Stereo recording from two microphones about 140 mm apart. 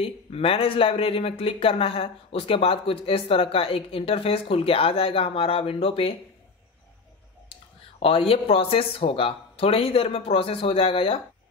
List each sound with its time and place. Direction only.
0.0 s speech: 40° left (ahead or behind)
8.0 s speech: 45° left (ahead or behind)